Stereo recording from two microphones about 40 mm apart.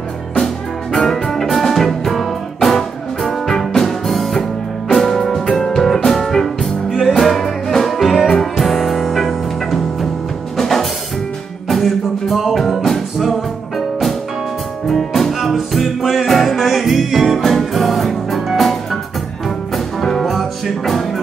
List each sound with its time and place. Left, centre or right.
0.9 s music: centre
10.6 s drum kit: centre
11.7 s music: centre
14.9 s music: centre
15.5 s music: centre
20.0 s music: centre